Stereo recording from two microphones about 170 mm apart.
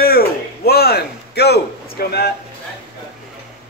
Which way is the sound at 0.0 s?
65° left (ahead or behind).